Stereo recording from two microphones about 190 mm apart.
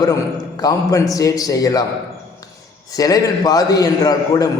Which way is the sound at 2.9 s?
20° left (ahead or behind).